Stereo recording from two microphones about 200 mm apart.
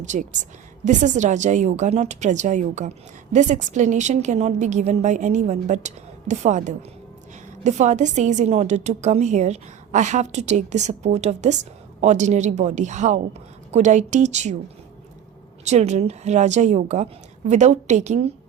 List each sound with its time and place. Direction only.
0.0 s a woman's voice: 35° right (ahead or behind)
15.6 s a woman's voice: 35° right (ahead or behind)